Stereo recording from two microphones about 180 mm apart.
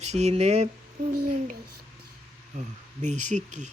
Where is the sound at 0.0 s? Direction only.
40° right (ahead or behind).